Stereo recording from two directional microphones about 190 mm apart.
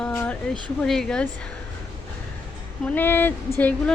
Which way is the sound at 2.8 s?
10° left (ahead or behind).